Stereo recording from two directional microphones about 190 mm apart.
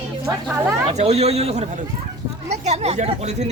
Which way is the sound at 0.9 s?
35° right (ahead or behind).